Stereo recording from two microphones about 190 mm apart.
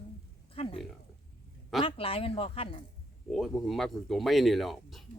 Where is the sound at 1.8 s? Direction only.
30° left (ahead or behind).